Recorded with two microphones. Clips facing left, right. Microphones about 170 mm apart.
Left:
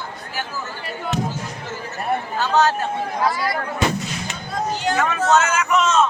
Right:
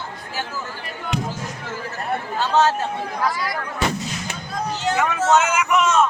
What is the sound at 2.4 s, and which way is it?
Speech, 25° right (ahead or behind).